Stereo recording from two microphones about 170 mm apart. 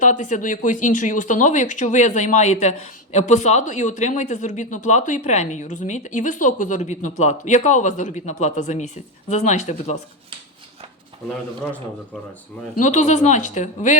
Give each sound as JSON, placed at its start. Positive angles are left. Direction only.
{"t": 0.0, "sound": "speech", "side_deg": 45}
{"t": 12.8, "sound": "speech", "side_deg": 45}